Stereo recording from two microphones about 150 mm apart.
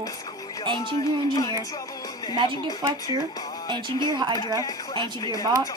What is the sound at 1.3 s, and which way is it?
Speech, 25° left (ahead or behind).